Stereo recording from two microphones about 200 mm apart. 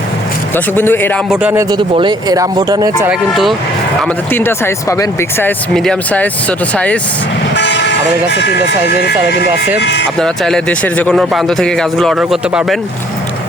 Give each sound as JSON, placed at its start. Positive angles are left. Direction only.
{"t": 0.5, "sound": "speech", "side_deg": 10}
{"t": 1.3, "sound": "speech", "side_deg": -5}
{"t": 1.7, "sound": "speech", "side_deg": -20}
{"t": 3.1, "sound": "speech", "side_deg": 0}
{"t": 4.0, "sound": "speech", "side_deg": 10}
{"t": 7.5, "sound": "speech", "side_deg": 60}
{"t": 9.8, "sound": "speech", "side_deg": 60}
{"t": 10.2, "sound": "speech", "side_deg": 0}